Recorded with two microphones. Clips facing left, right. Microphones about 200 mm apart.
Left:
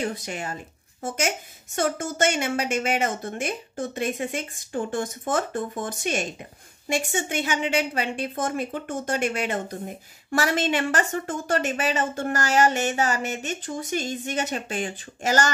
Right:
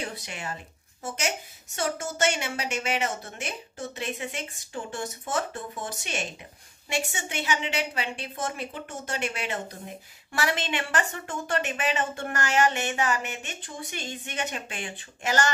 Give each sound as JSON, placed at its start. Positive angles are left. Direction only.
{"t": 0.0, "sound": "a woman's voice", "side_deg": 45}
{"t": 1.8, "sound": "a woman's voice", "side_deg": 50}